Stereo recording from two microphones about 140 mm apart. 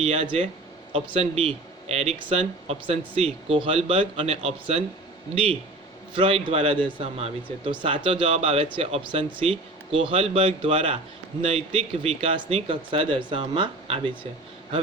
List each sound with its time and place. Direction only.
0.0 s speech: 45° right (ahead or behind)